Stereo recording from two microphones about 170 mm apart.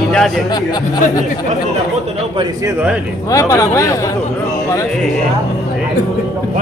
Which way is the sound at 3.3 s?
20° left (ahead or behind).